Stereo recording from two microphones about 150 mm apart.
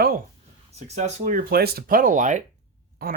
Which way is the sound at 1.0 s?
50° right (ahead or behind).